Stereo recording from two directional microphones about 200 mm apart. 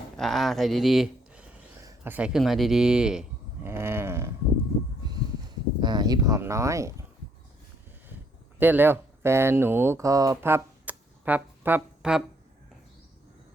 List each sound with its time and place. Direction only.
0.2 s speech: centre (ahead or behind)
3.7 s a sound: 15° right (ahead or behind)
5.8 s speech: 20° right (ahead or behind)
8.5 s speech: 10° right (ahead or behind)